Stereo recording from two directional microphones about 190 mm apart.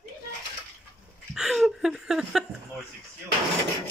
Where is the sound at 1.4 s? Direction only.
Centre (ahead or behind).